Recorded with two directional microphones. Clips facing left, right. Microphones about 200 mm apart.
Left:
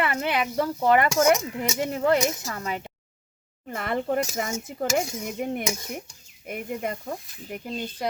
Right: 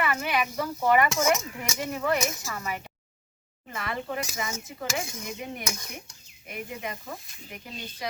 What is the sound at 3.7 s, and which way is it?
Speech, 55° left (ahead or behind).